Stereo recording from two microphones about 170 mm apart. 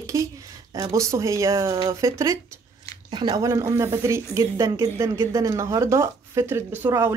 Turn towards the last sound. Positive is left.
turn(degrees=-15)  # may be behind; listen again after turning